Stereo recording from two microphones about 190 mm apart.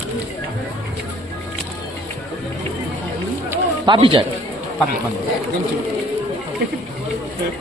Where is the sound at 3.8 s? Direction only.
25° right (ahead or behind).